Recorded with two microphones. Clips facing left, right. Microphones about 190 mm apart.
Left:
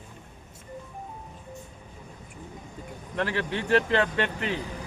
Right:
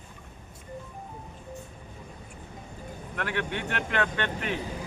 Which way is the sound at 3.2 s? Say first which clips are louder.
Left 3 dB; 30° left (ahead or behind).